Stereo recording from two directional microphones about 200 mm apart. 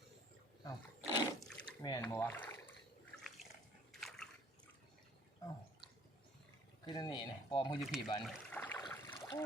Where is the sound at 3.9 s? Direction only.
Centre (ahead or behind).